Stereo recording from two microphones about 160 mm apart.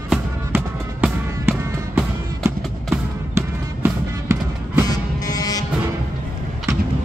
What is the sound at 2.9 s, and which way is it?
Music, 15° right (ahead or behind).